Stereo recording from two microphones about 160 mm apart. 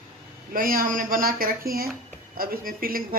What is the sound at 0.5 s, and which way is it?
Speech, 65° right (ahead or behind).